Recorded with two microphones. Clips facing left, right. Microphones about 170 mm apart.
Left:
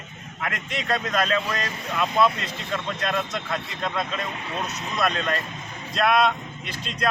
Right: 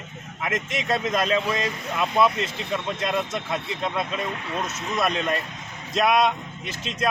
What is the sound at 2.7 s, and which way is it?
A man's voice, 15° right (ahead or behind).